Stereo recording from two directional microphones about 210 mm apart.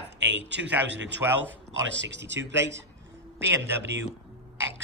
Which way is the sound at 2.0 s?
60° right (ahead or behind).